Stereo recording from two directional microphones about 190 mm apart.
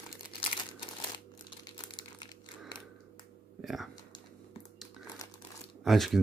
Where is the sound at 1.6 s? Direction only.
25° left (ahead or behind).